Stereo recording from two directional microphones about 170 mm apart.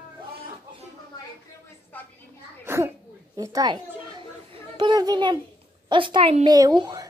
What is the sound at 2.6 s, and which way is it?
Sneeze, 15° right (ahead or behind).